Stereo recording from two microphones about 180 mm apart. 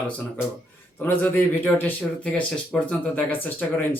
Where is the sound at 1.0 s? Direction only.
10° left (ahead or behind).